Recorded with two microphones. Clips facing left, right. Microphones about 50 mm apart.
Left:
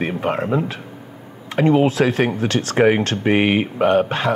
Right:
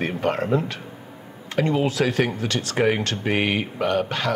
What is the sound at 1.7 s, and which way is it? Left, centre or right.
Speech, left.